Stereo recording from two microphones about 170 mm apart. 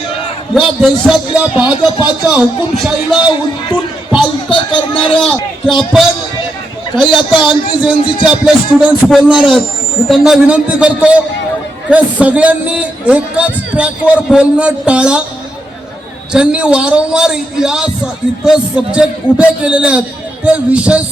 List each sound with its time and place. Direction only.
0.5 s a man's voice: centre (ahead or behind)
4.4 s speech: 30° left (ahead or behind)
5.2 s a man's voice: centre (ahead or behind)
7.0 s a man's voice: 30° left (ahead or behind)
7.4 s a man's voice: 5° right (ahead or behind)
16.3 s a man's voice: 5° right (ahead or behind)